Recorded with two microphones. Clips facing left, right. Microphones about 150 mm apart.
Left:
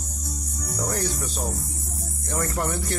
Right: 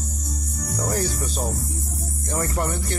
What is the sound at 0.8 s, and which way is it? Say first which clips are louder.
Speech: right 2 dB; centre (ahead or behind).